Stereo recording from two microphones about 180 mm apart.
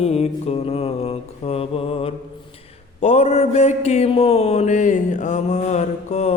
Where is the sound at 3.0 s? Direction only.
40° left (ahead or behind).